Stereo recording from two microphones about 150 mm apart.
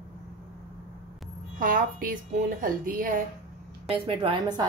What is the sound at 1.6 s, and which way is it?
Speech, 65° right (ahead or behind).